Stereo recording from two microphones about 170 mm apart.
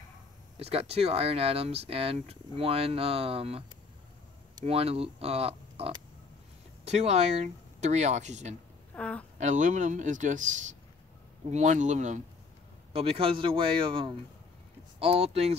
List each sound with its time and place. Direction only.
0.6 s speech: 35° right (ahead or behind)
4.6 s a man's voice: 35° right (ahead or behind)
8.9 s a woman's voice: 5° left (ahead or behind)
9.4 s a man's voice: 45° right (ahead or behind)
12.9 s speech: 35° right (ahead or behind)